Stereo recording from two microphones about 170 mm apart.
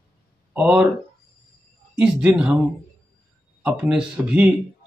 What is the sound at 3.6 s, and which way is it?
Speech, 5° right (ahead or behind).